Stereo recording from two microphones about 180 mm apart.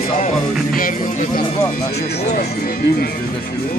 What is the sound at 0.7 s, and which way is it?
Speech, 50° left (ahead or behind).